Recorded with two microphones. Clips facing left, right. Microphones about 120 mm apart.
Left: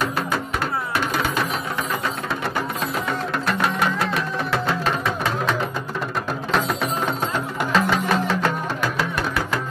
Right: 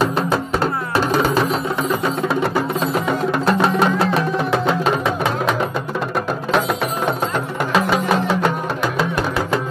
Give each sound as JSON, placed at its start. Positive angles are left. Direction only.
{"t": 0.9, "sound": "music", "side_deg": -35}
{"t": 3.4, "sound": "music", "side_deg": -25}
{"t": 7.7, "sound": "music", "side_deg": -10}